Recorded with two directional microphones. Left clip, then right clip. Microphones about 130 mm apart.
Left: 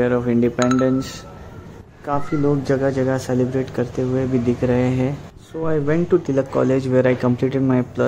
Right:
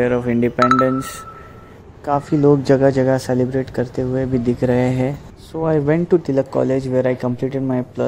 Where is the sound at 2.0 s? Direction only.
55° right (ahead or behind).